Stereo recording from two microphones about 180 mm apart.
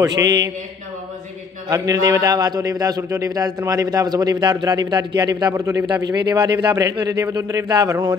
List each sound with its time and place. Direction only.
0.0 s mantra: 20° right (ahead or behind)
1.7 s a man's voice: 20° right (ahead or behind)